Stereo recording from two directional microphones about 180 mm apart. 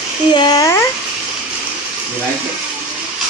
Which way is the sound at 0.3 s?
25° left (ahead or behind).